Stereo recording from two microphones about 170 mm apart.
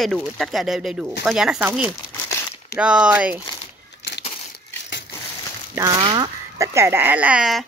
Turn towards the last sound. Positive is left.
turn(degrees=-5)  # may be behind; listen again after turning